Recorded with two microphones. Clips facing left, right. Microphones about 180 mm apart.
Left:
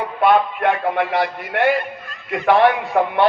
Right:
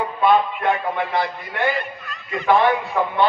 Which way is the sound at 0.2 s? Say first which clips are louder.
Left 2 dB; 65° left (ahead or behind).